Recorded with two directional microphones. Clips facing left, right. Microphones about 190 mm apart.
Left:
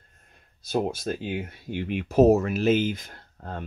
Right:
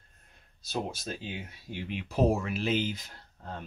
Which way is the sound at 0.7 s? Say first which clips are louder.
Left 8 dB; 60° left (ahead or behind).